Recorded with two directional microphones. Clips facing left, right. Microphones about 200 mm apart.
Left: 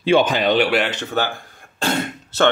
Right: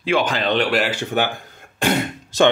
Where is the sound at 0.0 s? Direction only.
25° left (ahead or behind); by 0.8 s 5° left (ahead or behind).